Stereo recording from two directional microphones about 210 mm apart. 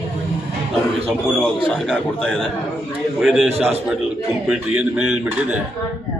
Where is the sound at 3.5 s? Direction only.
30° right (ahead or behind).